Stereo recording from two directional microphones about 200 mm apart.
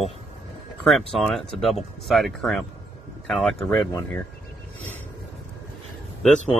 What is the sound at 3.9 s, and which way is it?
Speech, 15° left (ahead or behind).